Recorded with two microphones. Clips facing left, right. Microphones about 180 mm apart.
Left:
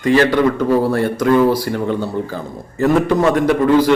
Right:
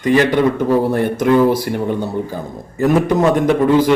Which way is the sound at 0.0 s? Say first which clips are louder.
Even; 20° right (ahead or behind).